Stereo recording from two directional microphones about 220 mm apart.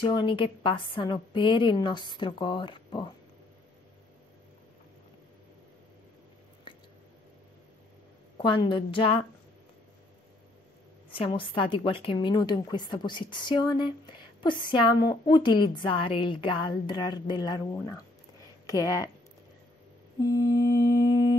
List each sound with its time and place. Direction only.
0.0 s a woman's voice: 20° left (ahead or behind)
8.4 s a woman's voice: 20° left (ahead or behind)
11.1 s a woman's voice: 25° left (ahead or behind)
18.7 s mantra: 15° left (ahead or behind)
20.3 s mantra: 15° left (ahead or behind)